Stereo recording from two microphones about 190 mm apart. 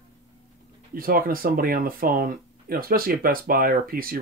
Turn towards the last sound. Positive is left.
turn(degrees=-50)  # may be behind; listen again after turning